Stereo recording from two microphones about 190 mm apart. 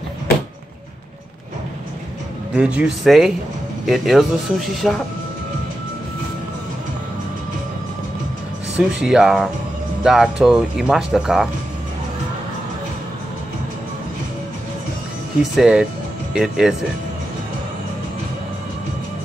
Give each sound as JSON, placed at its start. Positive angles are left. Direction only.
{"t": 2.5, "sound": "speech", "side_deg": -5}
{"t": 8.7, "sound": "speech", "side_deg": -5}
{"t": 15.5, "sound": "speech", "side_deg": -5}